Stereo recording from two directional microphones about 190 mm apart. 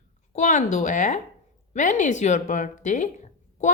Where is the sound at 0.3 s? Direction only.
40° left (ahead or behind).